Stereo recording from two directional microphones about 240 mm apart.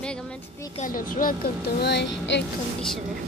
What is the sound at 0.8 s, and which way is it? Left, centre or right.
Speech, left.